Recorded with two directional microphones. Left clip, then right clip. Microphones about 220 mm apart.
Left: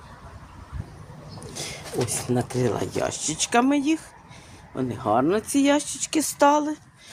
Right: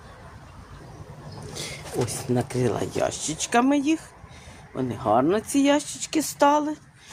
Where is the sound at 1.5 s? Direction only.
Centre (ahead or behind).